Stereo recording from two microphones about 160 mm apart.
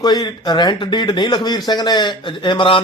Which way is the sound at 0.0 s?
25° left (ahead or behind).